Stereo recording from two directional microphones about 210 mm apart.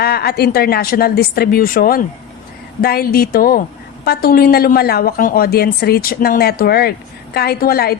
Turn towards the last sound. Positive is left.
turn(degrees=45)  # may be behind; listen again after turning